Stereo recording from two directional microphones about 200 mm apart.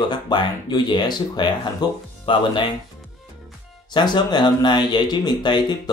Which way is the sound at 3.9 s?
20° left (ahead or behind).